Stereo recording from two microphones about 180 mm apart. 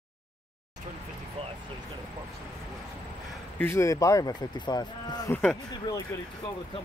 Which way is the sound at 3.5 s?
15° left (ahead or behind).